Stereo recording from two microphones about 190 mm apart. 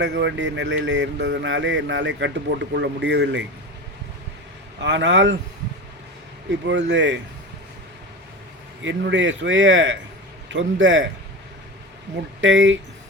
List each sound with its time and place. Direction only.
0.0 s speech: 65° right (ahead or behind)
4.8 s speech: 70° right (ahead or behind)
6.7 s speech: 70° right (ahead or behind)
8.8 s speech: 75° right (ahead or behind)
12.4 s speech: 80° right